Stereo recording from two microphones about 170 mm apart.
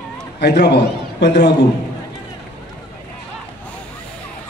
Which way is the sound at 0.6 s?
85° left.